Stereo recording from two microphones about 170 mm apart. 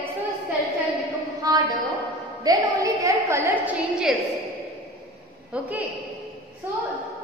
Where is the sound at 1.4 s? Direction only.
20° right (ahead or behind).